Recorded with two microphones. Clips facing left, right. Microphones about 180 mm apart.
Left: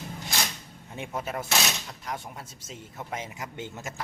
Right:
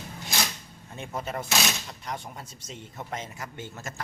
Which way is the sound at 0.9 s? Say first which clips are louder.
Even; 10° left (ahead or behind).